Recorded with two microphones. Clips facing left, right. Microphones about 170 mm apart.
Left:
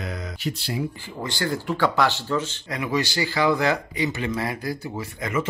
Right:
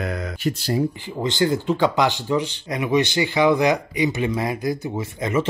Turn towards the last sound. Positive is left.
turn(degrees=-25)  # may be behind; listen again after turning